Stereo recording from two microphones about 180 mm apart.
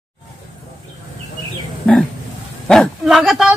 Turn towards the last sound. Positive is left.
turn(degrees=0)  # may be behind; listen again after turning